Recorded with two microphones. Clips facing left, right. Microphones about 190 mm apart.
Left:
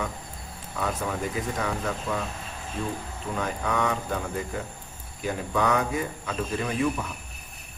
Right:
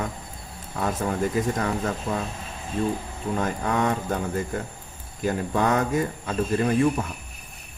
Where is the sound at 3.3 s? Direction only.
40° right (ahead or behind).